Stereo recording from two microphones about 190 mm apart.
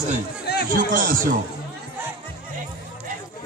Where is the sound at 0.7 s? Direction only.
45° right (ahead or behind).